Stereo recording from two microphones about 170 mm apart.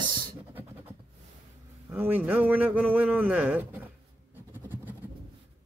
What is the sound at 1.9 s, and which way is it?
Speech, 10° right (ahead or behind).